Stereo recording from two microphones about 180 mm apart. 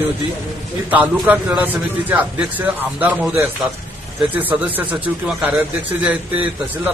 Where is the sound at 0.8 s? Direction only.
10° right (ahead or behind).